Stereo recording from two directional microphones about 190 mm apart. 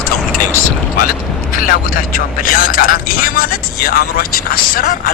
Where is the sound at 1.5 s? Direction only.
45° left (ahead or behind).